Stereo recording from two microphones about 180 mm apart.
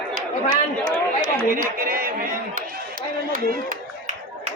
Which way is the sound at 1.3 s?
55° right (ahead or behind).